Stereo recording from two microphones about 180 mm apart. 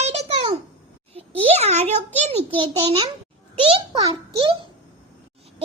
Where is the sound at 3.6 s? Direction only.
30° right (ahead or behind).